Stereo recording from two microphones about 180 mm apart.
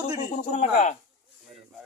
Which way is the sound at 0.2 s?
40° left (ahead or behind).